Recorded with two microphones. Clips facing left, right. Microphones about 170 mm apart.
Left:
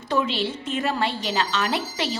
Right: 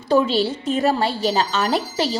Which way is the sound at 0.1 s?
35° right (ahead or behind).